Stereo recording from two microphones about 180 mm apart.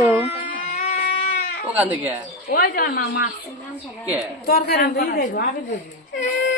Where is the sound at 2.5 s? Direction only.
55° left (ahead or behind).